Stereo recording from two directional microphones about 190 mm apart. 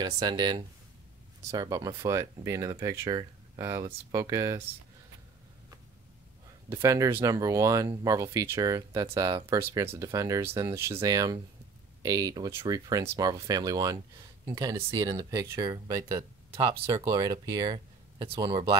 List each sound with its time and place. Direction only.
0.0 s speech: 25° right (ahead or behind)
6.7 s speech: 15° right (ahead or behind)